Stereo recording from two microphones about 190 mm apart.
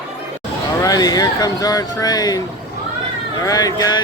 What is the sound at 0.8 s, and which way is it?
Speech, 20° left (ahead or behind).